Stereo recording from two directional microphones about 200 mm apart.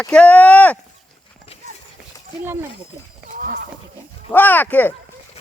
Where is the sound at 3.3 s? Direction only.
45° right (ahead or behind).